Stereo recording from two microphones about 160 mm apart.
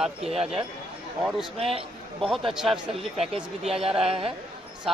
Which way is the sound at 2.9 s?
40° right (ahead or behind).